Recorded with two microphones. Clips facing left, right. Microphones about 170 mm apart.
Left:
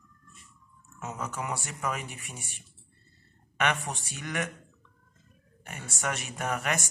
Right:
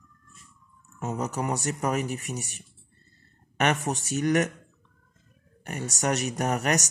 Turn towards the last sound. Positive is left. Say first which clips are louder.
# right 5 dB
turn(degrees=-40)  # may be behind; listen again after turning